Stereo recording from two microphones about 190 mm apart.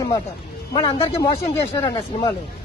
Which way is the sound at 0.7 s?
25° left (ahead or behind).